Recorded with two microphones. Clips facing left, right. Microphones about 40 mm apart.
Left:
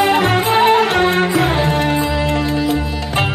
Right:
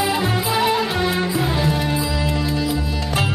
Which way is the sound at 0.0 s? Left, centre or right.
Left.